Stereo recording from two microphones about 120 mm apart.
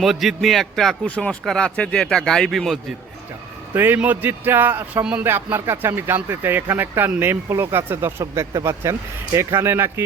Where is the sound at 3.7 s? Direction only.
15° right (ahead or behind).